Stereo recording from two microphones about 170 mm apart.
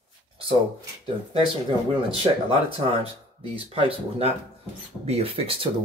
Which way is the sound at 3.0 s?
35° right (ahead or behind).